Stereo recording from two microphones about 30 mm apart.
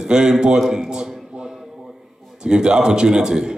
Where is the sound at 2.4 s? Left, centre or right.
Right.